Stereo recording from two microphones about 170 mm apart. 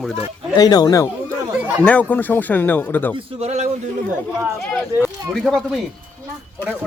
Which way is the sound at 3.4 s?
40° right (ahead or behind).